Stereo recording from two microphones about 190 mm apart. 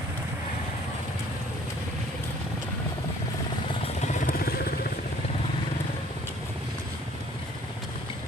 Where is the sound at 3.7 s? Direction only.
35° left (ahead or behind); by 4.9 s 50° left (ahead or behind).